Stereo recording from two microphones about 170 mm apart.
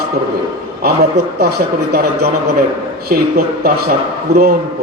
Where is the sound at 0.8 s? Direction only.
70° right (ahead or behind).